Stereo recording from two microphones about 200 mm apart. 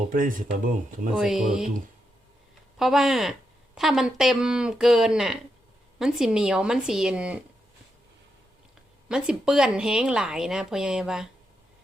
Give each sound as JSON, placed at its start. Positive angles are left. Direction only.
{"t": 0.1, "sound": "speech", "side_deg": -40}
{"t": 1.1, "sound": "speech", "side_deg": -5}
{"t": 2.7, "sound": "speech", "side_deg": 0}
{"t": 9.0, "sound": "speech", "side_deg": -5}